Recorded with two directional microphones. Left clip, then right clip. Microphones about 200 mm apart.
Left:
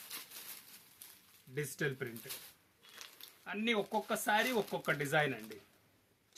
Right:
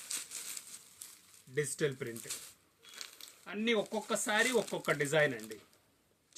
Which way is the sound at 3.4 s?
15° left (ahead or behind).